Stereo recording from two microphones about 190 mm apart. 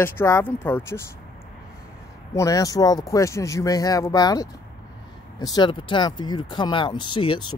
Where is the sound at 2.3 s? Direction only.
15° left (ahead or behind).